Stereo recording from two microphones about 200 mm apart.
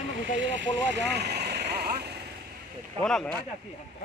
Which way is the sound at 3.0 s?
5° left (ahead or behind).